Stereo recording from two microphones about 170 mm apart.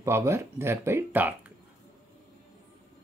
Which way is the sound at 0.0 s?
15° right (ahead or behind).